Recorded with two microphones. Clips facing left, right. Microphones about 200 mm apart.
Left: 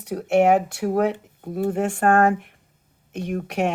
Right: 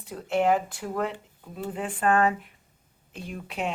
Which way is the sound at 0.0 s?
75° left (ahead or behind).